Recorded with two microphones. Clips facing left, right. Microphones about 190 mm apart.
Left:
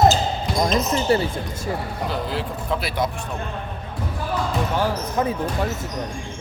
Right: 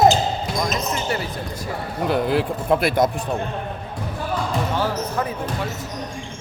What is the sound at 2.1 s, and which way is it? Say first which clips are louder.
Speech: right 8 dB; 60° right (ahead or behind).